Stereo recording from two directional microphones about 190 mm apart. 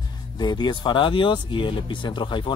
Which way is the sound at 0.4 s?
25° left (ahead or behind).